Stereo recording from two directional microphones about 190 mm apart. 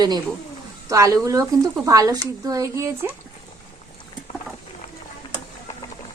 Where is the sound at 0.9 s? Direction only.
15° right (ahead or behind).